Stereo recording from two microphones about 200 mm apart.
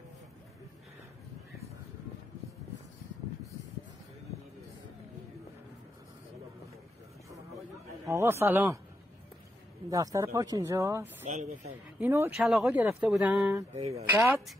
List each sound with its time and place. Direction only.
8.1 s speech: 15° right (ahead or behind)
9.8 s speech: 15° right (ahead or behind)
11.2 s speech: 40° right (ahead or behind)
12.0 s speech: 10° right (ahead or behind)
13.7 s speech: 30° right (ahead or behind)
14.1 s speech: 10° right (ahead or behind)